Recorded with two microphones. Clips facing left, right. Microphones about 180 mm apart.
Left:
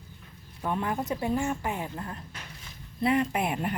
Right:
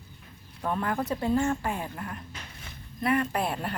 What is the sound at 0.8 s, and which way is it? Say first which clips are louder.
Speech: right 2 dB; 20° left (ahead or behind).